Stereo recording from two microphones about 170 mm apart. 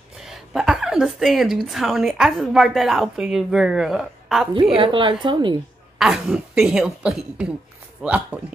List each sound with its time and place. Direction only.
0.2 s a woman's voice: centre (ahead or behind)
4.6 s a woman's voice: 30° right (ahead or behind)
5.9 s speech: 5° right (ahead or behind)